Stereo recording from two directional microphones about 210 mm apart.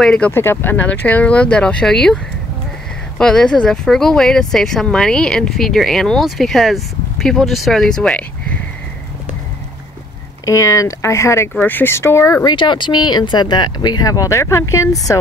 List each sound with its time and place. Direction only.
0.0 s speech: 5° left (ahead or behind)
3.2 s speech: 5° left (ahead or behind)
10.4 s speech: 15° left (ahead or behind)